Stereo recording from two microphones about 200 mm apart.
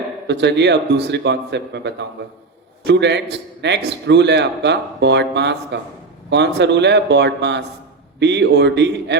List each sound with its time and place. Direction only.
0.3 s a man's voice: 60° right (ahead or behind)